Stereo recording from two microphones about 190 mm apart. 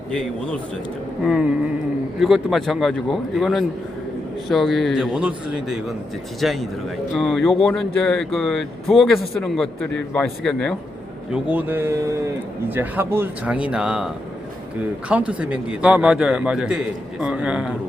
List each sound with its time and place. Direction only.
0.1 s a man's voice: 5° left (ahead or behind)
11.3 s speech: 10° right (ahead or behind)
15.1 s a man's voice: 5° right (ahead or behind)